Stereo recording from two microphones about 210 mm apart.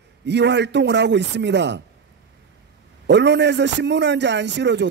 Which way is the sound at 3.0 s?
55° right (ahead or behind).